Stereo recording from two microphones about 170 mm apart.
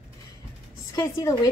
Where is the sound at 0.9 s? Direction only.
20° left (ahead or behind).